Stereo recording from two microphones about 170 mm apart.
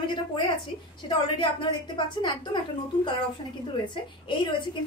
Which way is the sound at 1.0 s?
30° left (ahead or behind).